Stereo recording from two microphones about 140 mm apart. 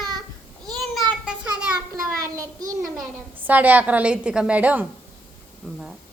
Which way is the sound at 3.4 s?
10° right (ahead or behind).